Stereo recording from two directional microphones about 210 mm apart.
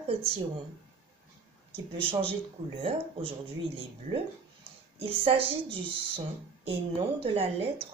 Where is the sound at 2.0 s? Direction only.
25° right (ahead or behind).